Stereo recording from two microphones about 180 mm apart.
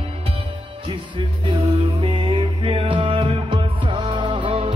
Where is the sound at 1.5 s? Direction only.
30° right (ahead or behind).